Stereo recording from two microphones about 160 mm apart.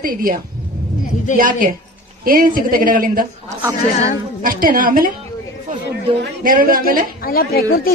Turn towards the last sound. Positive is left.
turn(degrees=70)  # may be behind; listen again after turning